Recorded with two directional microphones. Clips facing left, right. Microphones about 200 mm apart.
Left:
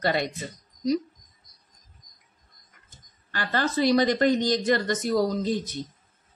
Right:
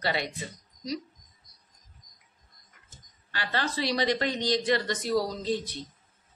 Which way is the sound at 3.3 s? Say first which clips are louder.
Left 5 dB; 45° left (ahead or behind).